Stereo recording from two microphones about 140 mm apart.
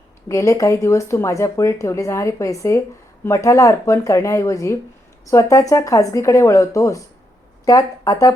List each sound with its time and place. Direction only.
0.3 s speech: 20° left (ahead or behind)